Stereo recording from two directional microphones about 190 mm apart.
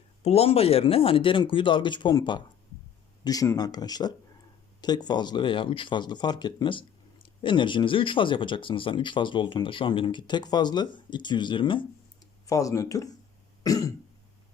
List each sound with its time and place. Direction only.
0.2 s speech: 30° left (ahead or behind); by 13.1 s 15° left (ahead or behind)
13.6 s cough: 20° left (ahead or behind)